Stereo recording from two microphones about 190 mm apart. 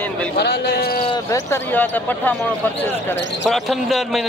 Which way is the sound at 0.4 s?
55° left (ahead or behind).